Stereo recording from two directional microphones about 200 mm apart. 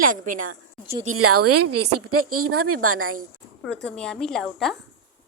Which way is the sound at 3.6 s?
5° left (ahead or behind).